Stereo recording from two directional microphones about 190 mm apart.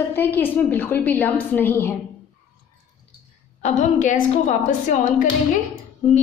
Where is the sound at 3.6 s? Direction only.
40° left (ahead or behind).